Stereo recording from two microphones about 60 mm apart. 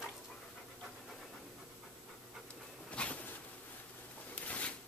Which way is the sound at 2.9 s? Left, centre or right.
Left.